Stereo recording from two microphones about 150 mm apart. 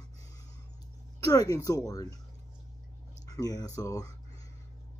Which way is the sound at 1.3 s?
25° left (ahead or behind).